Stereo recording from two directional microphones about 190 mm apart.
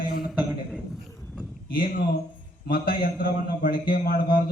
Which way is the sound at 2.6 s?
50° left (ahead or behind).